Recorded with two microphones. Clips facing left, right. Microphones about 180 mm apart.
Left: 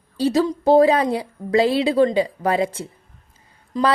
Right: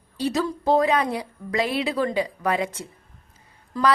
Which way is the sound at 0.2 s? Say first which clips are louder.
Left 6 dB; 30° left (ahead or behind).